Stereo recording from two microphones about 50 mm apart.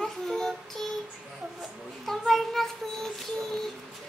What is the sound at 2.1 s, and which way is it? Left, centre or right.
Child singing, centre.